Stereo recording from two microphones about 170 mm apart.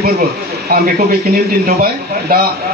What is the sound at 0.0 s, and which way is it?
Speech, 65° right (ahead or behind).